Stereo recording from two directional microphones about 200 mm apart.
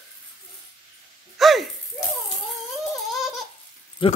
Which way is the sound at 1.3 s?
Centre (ahead or behind).